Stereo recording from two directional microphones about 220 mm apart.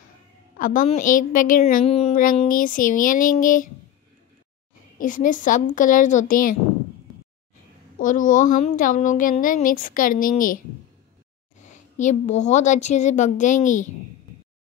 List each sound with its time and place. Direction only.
0.6 s a woman's voice: 35° left (ahead or behind)
1.9 s a woman's voice: 30° left (ahead or behind)
4.9 s a woman's voice: 35° left (ahead or behind)
8.3 s a woman's voice: 35° left (ahead or behind)
11.6 s a woman's voice: 35° left (ahead or behind)